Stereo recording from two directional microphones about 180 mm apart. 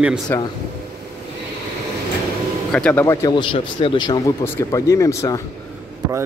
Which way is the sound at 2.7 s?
5° left (ahead or behind).